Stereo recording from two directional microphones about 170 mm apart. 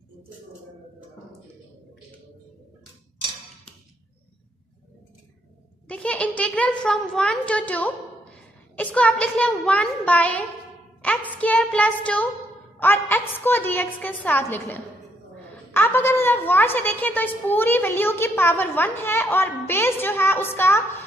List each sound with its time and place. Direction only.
5.9 s a woman's voice: 5° left (ahead or behind)